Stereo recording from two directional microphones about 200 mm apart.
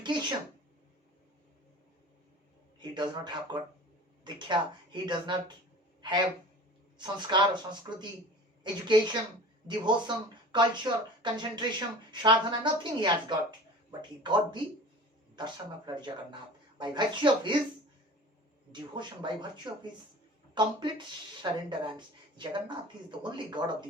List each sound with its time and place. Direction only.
0.0 s speech: 20° right (ahead or behind)
2.8 s speech: 20° right (ahead or behind)
16.0 s speech: 20° right (ahead or behind)
18.7 s speech: 25° right (ahead or behind)